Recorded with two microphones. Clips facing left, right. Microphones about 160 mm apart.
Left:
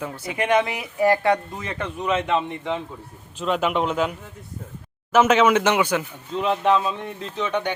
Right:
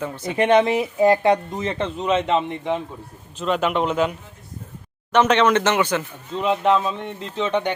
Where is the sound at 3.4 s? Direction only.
Centre (ahead or behind).